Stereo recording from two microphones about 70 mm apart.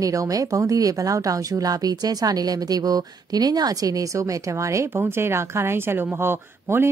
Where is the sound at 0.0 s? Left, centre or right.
Right.